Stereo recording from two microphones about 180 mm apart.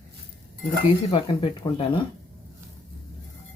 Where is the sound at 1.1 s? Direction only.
30° left (ahead or behind).